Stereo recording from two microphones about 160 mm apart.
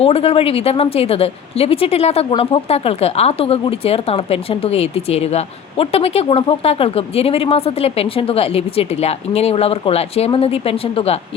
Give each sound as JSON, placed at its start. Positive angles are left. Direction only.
{"t": 0.0, "sound": "speech", "side_deg": 40}